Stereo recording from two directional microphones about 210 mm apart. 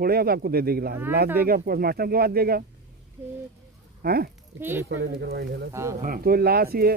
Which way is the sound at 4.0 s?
45° right (ahead or behind).